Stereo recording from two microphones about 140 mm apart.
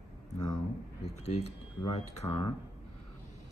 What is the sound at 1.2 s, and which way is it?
Speech, 50° left (ahead or behind).